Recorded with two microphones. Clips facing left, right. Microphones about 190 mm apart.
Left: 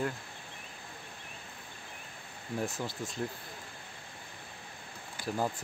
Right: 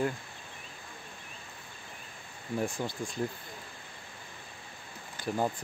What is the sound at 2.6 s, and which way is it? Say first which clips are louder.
Speech: right 2 dB; centre (ahead or behind).